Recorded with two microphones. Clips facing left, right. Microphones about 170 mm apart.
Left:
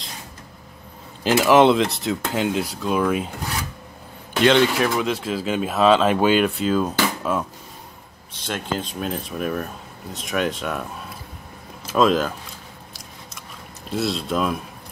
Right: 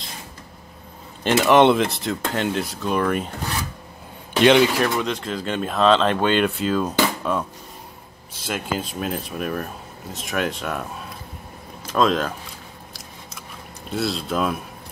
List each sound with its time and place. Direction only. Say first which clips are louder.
1.2 s speech: even; centre (ahead or behind)
4.4 s speech: right 2 dB; 15° right (ahead or behind)
4.7 s speech: left 1 dB; centre (ahead or behind)
13.8 s speech: left 1 dB; centre (ahead or behind)